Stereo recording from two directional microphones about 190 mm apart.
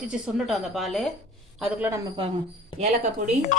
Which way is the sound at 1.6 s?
10° right (ahead or behind).